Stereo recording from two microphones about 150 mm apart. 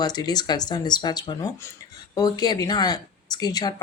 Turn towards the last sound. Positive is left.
turn(degrees=25)  # may be behind; listen again after turning